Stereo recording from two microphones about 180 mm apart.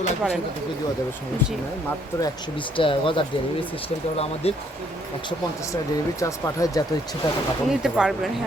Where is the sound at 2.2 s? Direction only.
30° left (ahead or behind).